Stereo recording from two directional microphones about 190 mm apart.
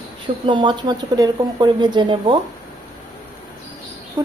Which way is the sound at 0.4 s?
25° right (ahead or behind).